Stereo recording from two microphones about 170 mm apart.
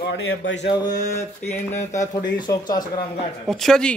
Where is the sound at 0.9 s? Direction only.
45° left (ahead or behind).